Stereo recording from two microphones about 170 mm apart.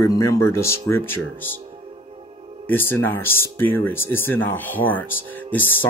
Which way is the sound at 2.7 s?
10° left (ahead or behind).